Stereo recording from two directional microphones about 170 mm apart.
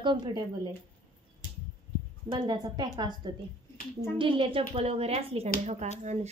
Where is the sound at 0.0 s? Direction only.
25° right (ahead or behind).